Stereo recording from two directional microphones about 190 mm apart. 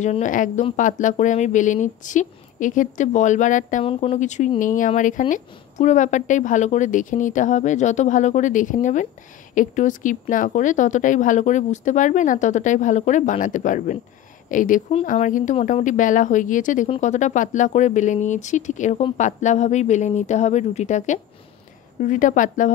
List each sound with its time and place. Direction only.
0.0 s a woman's voice: 40° left (ahead or behind)